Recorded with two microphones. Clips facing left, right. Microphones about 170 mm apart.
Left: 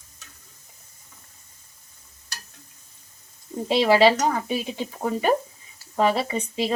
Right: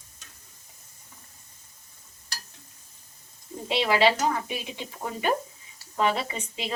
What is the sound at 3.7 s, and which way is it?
A woman's voice, 35° left (ahead or behind).